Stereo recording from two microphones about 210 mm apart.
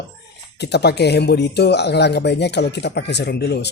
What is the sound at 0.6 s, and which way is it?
Speech, 50° left (ahead or behind).